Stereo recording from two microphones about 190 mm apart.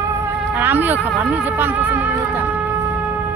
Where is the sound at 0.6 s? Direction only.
10° right (ahead or behind).